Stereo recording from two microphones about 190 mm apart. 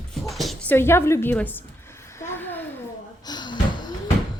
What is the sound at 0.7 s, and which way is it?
Speech, 15° left (ahead or behind).